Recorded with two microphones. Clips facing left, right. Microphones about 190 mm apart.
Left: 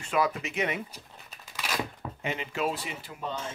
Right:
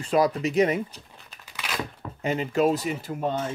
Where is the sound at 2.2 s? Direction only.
40° right (ahead or behind).